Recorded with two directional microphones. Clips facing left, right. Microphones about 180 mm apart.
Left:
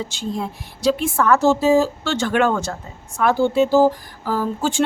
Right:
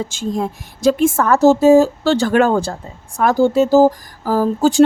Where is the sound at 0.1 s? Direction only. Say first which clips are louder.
Right 5 dB; 45° right (ahead or behind).